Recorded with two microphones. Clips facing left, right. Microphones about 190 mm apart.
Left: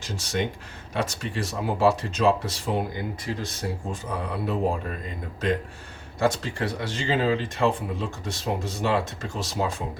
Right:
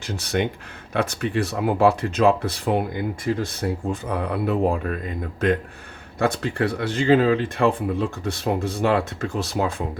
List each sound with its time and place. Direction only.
0.0 s speech: 60° right (ahead or behind)
6.1 s speech: 60° right (ahead or behind)